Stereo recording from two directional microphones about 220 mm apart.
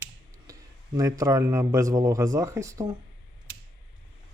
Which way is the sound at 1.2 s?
15° right (ahead or behind).